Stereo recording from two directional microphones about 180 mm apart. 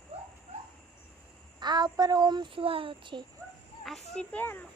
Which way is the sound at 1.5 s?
25° right (ahead or behind).